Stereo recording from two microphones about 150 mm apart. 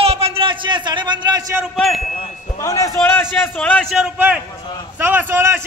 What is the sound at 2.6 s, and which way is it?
Speech, 20° left (ahead or behind).